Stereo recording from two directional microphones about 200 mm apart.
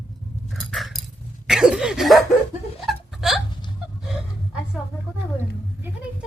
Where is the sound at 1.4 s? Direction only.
5° right (ahead or behind).